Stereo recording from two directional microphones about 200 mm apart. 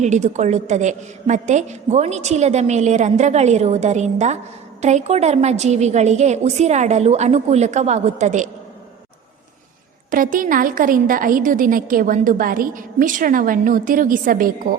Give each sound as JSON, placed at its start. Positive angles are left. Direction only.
{"t": 0.0, "sound": "a woman's voice", "side_deg": -35}
{"t": 10.1, "sound": "a woman's voice", "side_deg": -45}